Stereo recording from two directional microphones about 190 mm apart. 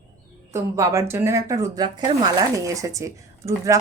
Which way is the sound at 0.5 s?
15° right (ahead or behind).